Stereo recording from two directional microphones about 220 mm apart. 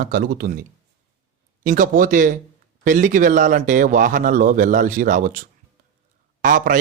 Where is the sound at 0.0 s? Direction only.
40° right (ahead or behind).